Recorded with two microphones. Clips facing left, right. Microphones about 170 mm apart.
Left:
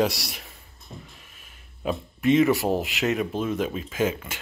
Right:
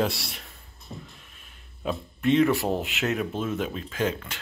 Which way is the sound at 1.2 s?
Centre (ahead or behind).